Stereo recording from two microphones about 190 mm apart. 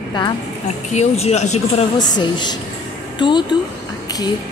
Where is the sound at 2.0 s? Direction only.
20° left (ahead or behind).